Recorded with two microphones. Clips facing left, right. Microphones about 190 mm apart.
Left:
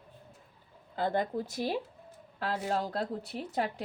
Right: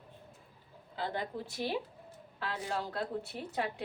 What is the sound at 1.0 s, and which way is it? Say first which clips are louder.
A woman's voice: left 7 dB; 45° left (ahead or behind).